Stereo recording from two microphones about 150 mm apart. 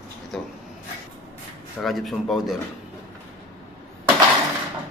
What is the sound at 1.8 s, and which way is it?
Speech, centre (ahead or behind).